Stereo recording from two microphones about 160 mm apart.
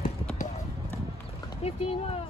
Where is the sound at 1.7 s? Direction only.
40° left (ahead or behind).